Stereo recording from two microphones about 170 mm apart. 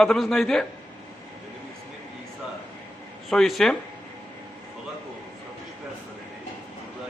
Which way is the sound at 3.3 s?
Centre (ahead or behind).